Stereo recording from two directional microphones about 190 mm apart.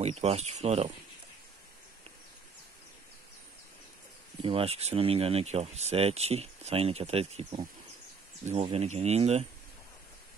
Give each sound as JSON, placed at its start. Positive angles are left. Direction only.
{"t": 0.0, "sound": "speech", "side_deg": -35}
{"t": 4.4, "sound": "speech", "side_deg": -30}